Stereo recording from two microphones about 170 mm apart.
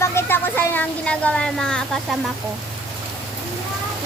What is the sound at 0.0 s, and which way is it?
Speech, 15° left (ahead or behind).